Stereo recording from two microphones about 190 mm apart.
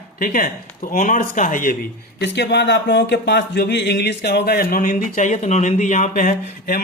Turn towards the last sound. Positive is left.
turn(degrees=50)  # may be behind; listen again after turning